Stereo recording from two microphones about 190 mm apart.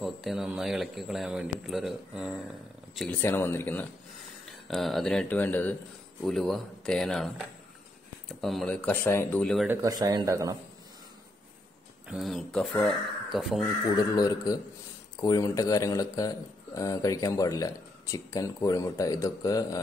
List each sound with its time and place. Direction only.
0.0 s speech: centre (ahead or behind)
3.0 s speech: 10° left (ahead or behind)
4.6 s speech: centre (ahead or behind)
9.7 s speech: 20° right (ahead or behind)
12.1 s speech: centre (ahead or behind)
13.9 s speech: 20° left (ahead or behind)